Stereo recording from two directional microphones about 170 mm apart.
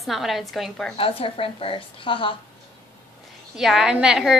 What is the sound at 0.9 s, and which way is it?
A woman's voice, 35° left (ahead or behind).